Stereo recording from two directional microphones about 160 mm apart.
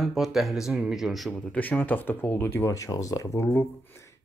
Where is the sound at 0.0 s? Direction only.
Centre (ahead or behind).